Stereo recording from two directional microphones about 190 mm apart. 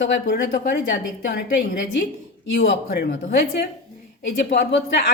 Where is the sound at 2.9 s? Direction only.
60° left (ahead or behind).